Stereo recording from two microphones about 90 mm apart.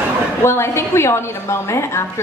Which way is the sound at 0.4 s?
25° left (ahead or behind).